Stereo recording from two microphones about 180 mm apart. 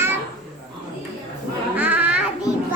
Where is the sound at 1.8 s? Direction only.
10° right (ahead or behind).